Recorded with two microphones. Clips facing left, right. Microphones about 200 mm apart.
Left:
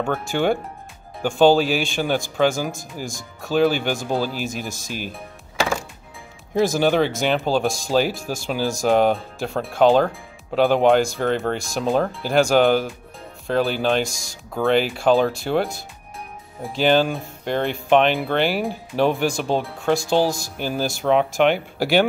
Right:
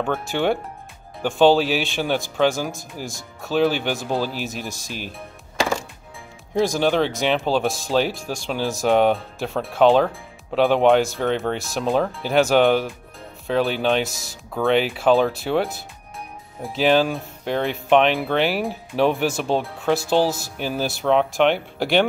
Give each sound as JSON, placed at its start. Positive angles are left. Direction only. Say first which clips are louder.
{"t": 0.0, "sound": "speech", "louder": "left 1 dB", "side_deg": 0}
{"t": 5.6, "sound": "music", "louder": "even", "side_deg": 10}
{"t": 6.5, "sound": "speech", "louder": "left 1 dB", "side_deg": 5}